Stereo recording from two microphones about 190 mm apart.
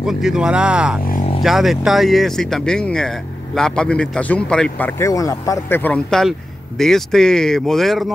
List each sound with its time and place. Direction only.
0.0 s speech: 5° right (ahead or behind)
1.1 s vehicle: 35° left (ahead or behind)
1.4 s speech: centre (ahead or behind)